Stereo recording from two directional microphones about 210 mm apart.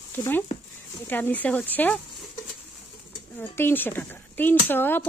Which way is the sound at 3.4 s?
10° left (ahead or behind).